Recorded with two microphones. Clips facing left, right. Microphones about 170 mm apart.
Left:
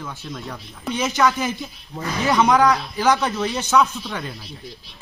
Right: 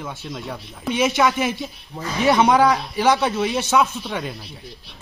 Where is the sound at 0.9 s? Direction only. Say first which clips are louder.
Right 3 dB; centre (ahead or behind).